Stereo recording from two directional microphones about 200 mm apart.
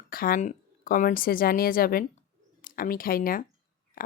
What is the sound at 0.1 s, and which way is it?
A woman's voice, 45° left (ahead or behind).